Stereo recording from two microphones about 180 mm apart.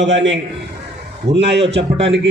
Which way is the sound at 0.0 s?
85° right.